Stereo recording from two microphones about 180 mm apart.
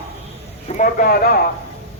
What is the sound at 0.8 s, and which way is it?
Speech, 50° left (ahead or behind).